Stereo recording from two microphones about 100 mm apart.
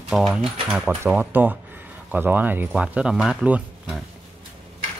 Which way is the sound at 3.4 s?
15° right (ahead or behind).